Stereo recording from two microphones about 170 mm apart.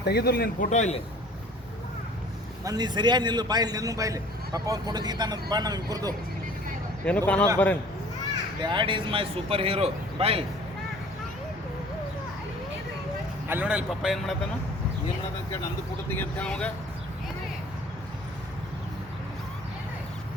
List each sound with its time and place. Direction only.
0.0 s speech: 70° left (ahead or behind)
0.7 s a man's voice: 45° left (ahead or behind)
2.6 s a man's voice: 25° right (ahead or behind)
7.0 s speech: 5° left (ahead or behind)
8.6 s speech: 30° right (ahead or behind)
13.5 s speech: 10° right (ahead or behind)
16.0 s speech: 10° left (ahead or behind)